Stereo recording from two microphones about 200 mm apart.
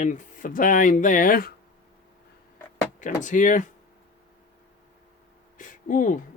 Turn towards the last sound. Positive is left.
turn(degrees=40)  # may be behind; listen again after turning